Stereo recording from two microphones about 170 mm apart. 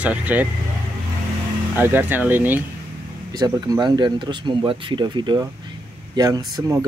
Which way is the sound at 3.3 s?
25° right (ahead or behind).